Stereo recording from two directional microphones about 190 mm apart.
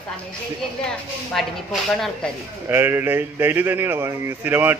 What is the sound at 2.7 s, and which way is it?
Speech, 10° right (ahead or behind).